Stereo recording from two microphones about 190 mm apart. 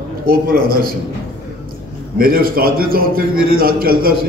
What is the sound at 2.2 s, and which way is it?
A man's voice, 50° right (ahead or behind).